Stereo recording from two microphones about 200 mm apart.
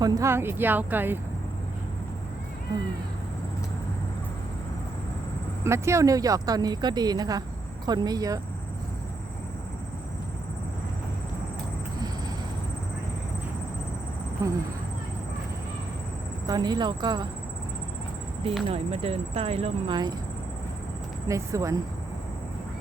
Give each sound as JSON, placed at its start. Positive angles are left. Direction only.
{"t": 0.0, "sound": "speech", "side_deg": -15}
{"t": 5.6, "sound": "speech", "side_deg": -15}
{"t": 14.4, "sound": "speech", "side_deg": -15}
{"t": 16.5, "sound": "speech", "side_deg": -20}
{"t": 18.7, "sound": "speech", "side_deg": -30}
{"t": 21.2, "sound": "speech", "side_deg": -15}